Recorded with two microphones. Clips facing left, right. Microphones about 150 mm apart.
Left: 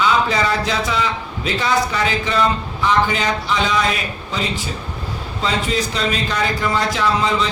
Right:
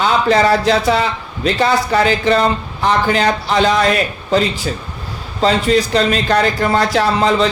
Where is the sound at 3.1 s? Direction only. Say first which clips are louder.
Right 5 dB; 60° right (ahead or behind).